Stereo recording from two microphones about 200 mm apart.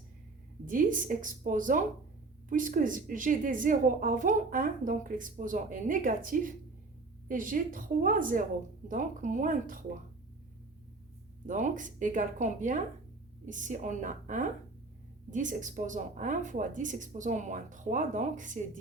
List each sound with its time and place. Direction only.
0.6 s a woman's voice: 40° right (ahead or behind)
11.4 s a woman's voice: 40° right (ahead or behind)